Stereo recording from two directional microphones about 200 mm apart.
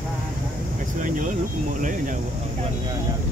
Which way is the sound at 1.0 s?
40° right (ahead or behind).